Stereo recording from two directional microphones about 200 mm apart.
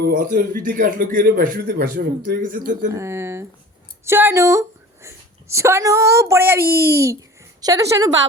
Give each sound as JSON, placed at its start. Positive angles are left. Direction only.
{"t": 0.0, "sound": "a man's voice", "side_deg": -45}
{"t": 2.9, "sound": "a woman's voice", "side_deg": -15}
{"t": 6.6, "sound": "a man's voice", "side_deg": -50}
{"t": 6.8, "sound": "a child's voice", "side_deg": -15}